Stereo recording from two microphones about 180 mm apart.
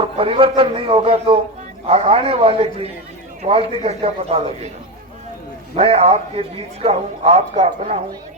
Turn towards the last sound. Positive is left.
turn(degrees=-40)  # may be behind; listen again after turning